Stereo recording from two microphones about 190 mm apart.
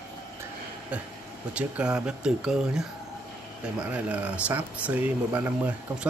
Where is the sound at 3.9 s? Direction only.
5° right (ahead or behind).